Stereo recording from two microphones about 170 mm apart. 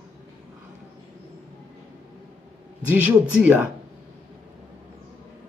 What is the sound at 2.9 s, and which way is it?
Speech, 5° right (ahead or behind).